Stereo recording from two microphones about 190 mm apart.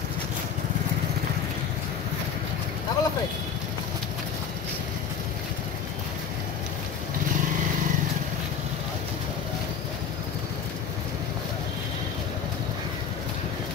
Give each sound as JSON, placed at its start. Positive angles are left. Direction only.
{"t": 2.9, "sound": "vehicle", "side_deg": 20}